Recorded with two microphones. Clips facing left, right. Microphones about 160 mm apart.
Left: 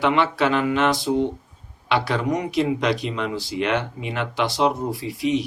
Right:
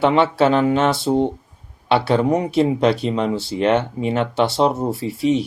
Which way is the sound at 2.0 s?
30° right (ahead or behind).